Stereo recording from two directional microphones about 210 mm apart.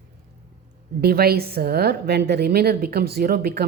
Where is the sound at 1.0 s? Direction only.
45° right (ahead or behind).